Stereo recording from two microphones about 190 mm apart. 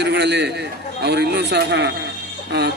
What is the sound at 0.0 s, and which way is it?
A man's voice, 60° right (ahead or behind).